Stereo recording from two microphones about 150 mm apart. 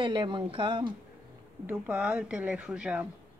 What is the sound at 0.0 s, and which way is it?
Speech, 30° right (ahead or behind).